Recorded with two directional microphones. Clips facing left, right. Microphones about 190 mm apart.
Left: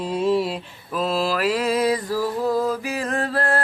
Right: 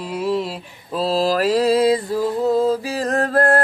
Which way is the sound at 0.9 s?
35° right (ahead or behind).